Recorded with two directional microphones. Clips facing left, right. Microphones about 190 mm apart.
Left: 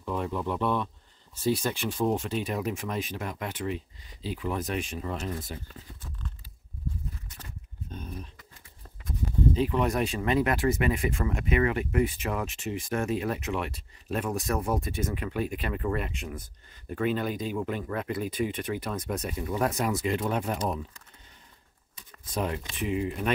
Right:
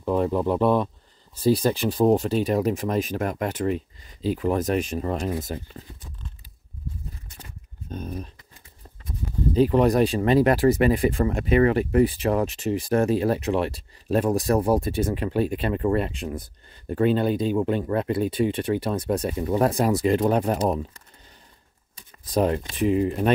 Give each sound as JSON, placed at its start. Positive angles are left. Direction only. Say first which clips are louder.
{"t": 0.0, "sound": "speech", "louder": "right 8 dB", "side_deg": -40}
{"t": 7.9, "sound": "speech", "louder": "right 7 dB", "side_deg": -45}
{"t": 9.6, "sound": "speech", "louder": "right 12 dB", "side_deg": -35}
{"t": 22.2, "sound": "speech", "louder": "right 9 dB", "side_deg": -40}